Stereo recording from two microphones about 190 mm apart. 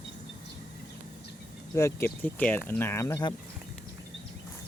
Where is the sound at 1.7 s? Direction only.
15° left (ahead or behind).